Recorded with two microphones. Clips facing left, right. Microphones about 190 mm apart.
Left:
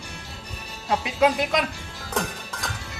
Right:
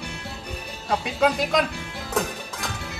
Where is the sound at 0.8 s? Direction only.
Centre (ahead or behind).